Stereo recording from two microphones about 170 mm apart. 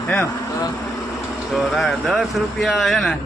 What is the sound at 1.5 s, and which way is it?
A man's voice, centre (ahead or behind).